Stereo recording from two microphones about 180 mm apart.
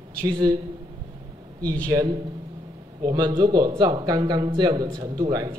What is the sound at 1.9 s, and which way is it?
A man's voice, 15° right (ahead or behind).